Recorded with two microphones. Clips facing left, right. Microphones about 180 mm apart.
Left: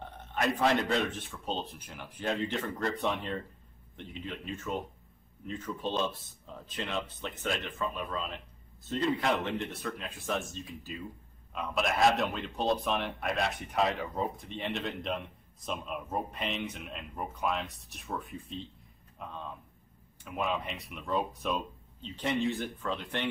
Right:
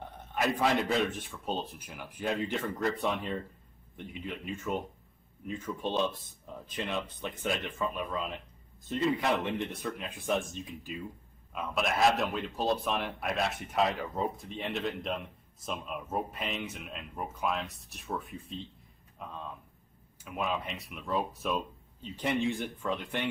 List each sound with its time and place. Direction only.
0.3 s a man's voice: centre (ahead or behind); by 10.9 s 15° right (ahead or behind)
11.5 s a man's voice: centre (ahead or behind)